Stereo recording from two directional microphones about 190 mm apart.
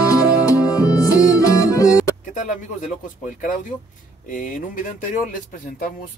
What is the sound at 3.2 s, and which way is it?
Speech, 45° left (ahead or behind).